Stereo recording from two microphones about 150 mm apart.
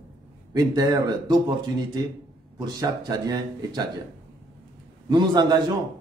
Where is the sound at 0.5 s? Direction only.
25° right (ahead or behind).